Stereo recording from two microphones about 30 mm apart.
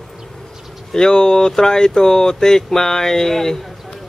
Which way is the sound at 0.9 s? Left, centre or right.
Left.